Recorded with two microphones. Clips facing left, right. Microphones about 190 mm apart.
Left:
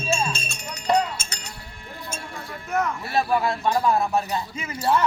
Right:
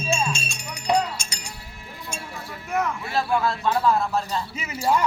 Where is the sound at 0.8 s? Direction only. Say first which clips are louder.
Left 1 dB; 10° right (ahead or behind).